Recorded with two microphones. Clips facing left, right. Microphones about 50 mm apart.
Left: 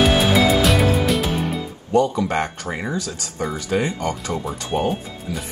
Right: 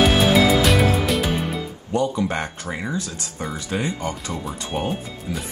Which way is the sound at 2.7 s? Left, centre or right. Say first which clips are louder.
Left 1 dB; centre.